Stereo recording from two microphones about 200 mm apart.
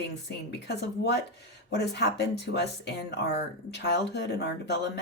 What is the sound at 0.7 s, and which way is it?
Speech, 55° left (ahead or behind).